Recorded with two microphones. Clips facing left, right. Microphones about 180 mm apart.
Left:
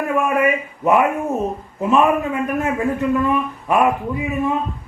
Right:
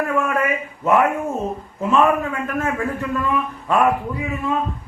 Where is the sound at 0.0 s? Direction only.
15° left (ahead or behind).